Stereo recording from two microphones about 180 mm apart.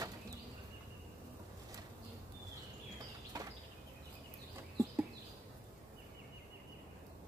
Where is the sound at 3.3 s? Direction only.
20° right (ahead or behind).